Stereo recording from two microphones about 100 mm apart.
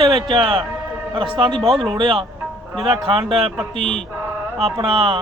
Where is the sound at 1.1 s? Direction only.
60° right (ahead or behind).